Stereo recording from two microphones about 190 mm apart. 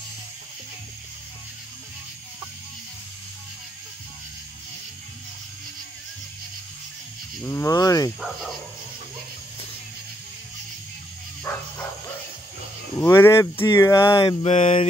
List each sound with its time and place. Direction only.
7.4 s speech: 15° left (ahead or behind)
11.5 s bow-wow: 10° left (ahead or behind)
13.0 s speech: 10° left (ahead or behind)
14.0 s mantra: 25° left (ahead or behind)